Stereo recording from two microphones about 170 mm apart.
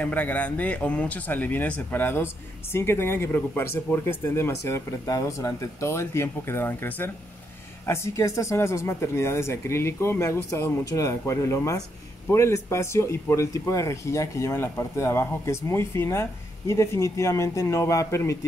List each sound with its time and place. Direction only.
0.0 s speech: 10° left (ahead or behind)